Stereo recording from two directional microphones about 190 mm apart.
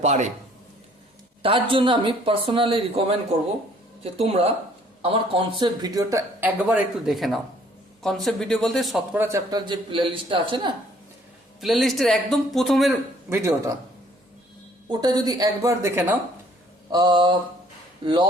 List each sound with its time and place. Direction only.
0.0 s speech: 40° right (ahead or behind)
1.4 s speech: 30° right (ahead or behind)
4.0 s speech: 30° right (ahead or behind); by 9.0 s centre (ahead or behind)
9.1 s speech: 15° right (ahead or behind)
11.6 s speech: centre (ahead or behind)
13.3 s speech: 15° right (ahead or behind)
14.8 s speech: 20° right (ahead or behind)